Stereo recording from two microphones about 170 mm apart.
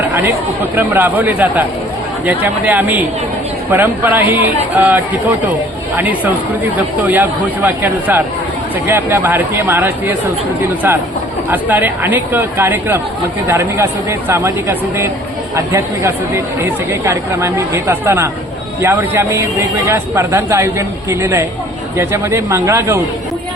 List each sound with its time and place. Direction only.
0.8 s speech: 10° right (ahead or behind)
7.1 s speech: 10° right (ahead or behind)
11.5 s speech: 10° right (ahead or behind)